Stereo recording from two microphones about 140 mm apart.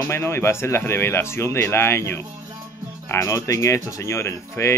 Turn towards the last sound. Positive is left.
turn(degrees=20)  # may be behind; listen again after turning